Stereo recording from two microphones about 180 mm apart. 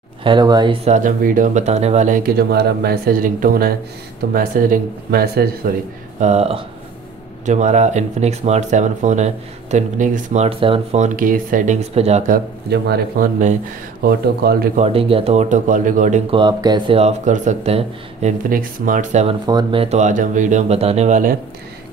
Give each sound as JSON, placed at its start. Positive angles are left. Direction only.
{"t": 0.2, "sound": "speech", "side_deg": -25}
{"t": 0.8, "sound": "speech", "side_deg": -45}
{"t": 6.1, "sound": "speech", "side_deg": -40}
{"t": 12.3, "sound": "speech", "side_deg": -65}
{"t": 14.8, "sound": "speech", "side_deg": -30}
{"t": 16.3, "sound": "speech", "side_deg": -25}
{"t": 18.5, "sound": "speech", "side_deg": -50}
{"t": 19.4, "sound": "speech", "side_deg": -25}